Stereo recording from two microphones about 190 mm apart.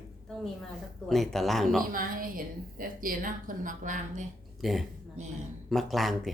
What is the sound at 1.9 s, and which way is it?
A woman's voice, 45° right (ahead or behind).